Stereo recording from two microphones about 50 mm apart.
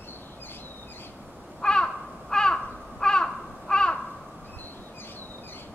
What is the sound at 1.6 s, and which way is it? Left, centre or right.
Crow, centre.